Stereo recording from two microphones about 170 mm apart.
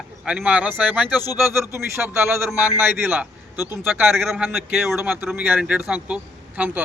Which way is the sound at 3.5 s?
20° left (ahead or behind).